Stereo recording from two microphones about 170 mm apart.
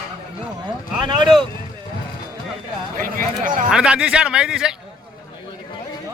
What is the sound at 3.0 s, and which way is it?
Speech, 50° right (ahead or behind).